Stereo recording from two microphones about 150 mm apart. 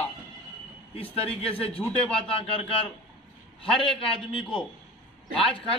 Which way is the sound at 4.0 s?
35° left (ahead or behind).